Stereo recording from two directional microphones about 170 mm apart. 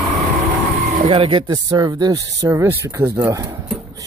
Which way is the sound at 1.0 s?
30° right (ahead or behind).